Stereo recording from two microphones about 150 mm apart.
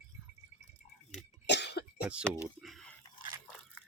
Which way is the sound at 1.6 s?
90° left.